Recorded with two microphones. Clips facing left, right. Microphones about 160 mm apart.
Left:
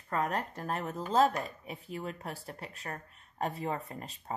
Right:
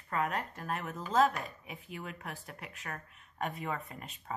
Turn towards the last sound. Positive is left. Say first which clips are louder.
# left 3 dB
turn(degrees=35)  # may be behind; listen again after turning